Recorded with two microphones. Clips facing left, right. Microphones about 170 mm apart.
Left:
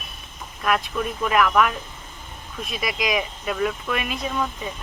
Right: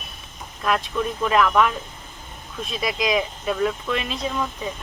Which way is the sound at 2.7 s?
30° right (ahead or behind).